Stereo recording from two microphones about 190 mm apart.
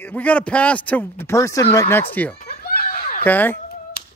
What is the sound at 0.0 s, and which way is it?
Speech, 10° left (ahead or behind).